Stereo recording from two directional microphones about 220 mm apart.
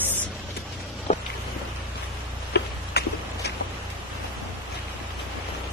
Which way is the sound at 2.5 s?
45° left (ahead or behind).